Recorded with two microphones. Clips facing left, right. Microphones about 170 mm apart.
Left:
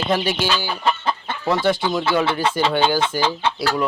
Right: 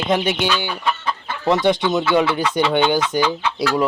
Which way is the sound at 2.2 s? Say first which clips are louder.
Right 1 dB; 30° left (ahead or behind).